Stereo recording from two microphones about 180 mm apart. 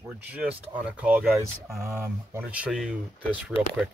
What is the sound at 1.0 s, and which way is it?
Speech, 5° right (ahead or behind).